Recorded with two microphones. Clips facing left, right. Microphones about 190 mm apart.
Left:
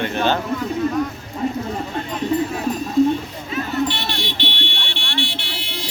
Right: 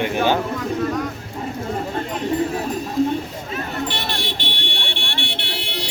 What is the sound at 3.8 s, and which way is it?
Vehicle, 50° right (ahead or behind).